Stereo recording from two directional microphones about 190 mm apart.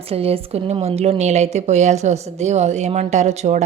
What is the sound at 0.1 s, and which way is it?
A woman's voice, 30° right (ahead or behind).